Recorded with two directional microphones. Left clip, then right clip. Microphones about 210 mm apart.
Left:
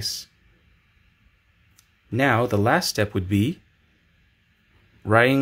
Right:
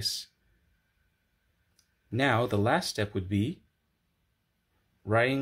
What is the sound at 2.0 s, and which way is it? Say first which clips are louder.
Speech: left 6 dB; 5° left (ahead or behind).